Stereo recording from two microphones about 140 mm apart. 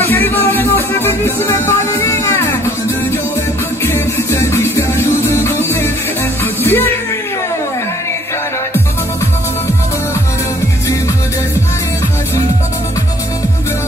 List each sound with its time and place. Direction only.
0.0 s music: 15° left (ahead or behind)
3.8 s music: 20° left (ahead or behind)